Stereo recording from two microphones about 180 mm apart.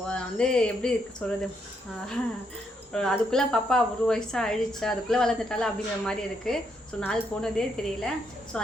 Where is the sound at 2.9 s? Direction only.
5° left (ahead or behind).